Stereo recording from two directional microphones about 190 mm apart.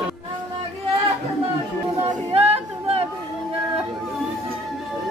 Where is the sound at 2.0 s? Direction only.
30° right (ahead or behind).